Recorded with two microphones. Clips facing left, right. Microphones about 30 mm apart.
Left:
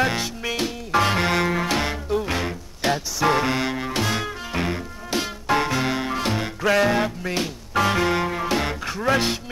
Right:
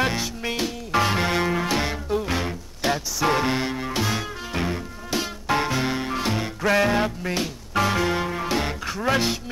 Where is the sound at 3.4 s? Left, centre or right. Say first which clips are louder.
Left 1 dB; left.